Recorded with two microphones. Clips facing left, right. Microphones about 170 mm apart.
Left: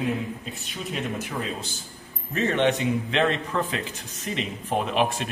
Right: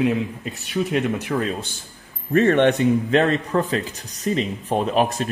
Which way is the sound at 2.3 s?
55° right (ahead or behind).